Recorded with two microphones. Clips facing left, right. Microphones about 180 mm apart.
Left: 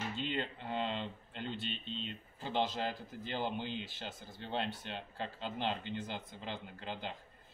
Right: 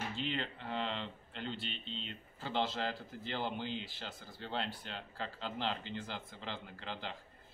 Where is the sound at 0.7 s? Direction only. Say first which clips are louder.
Left 1 dB; 20° left (ahead or behind).